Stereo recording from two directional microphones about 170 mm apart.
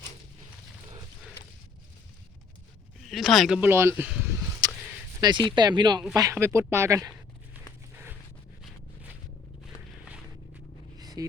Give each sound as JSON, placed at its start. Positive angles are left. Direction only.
{"t": 3.0, "sound": "speech", "side_deg": 0}
{"t": 5.2, "sound": "speech", "side_deg": -25}
{"t": 10.9, "sound": "a sound", "side_deg": -20}